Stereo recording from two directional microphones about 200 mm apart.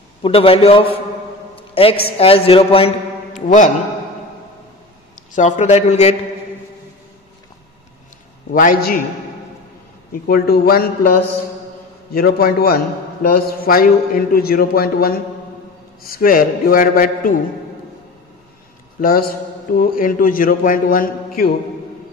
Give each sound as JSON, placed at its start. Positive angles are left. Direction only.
{"t": 0.2, "sound": "a man's voice", "side_deg": 25}
{"t": 3.3, "sound": "a man's voice", "side_deg": 40}
{"t": 5.3, "sound": "a man's voice", "side_deg": 35}
{"t": 8.5, "sound": "a man's voice", "side_deg": 45}
{"t": 10.2, "sound": "a man's voice", "side_deg": 50}
{"t": 18.9, "sound": "a man's voice", "side_deg": 45}